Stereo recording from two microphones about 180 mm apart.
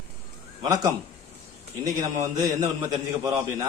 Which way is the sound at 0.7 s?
20° right (ahead or behind).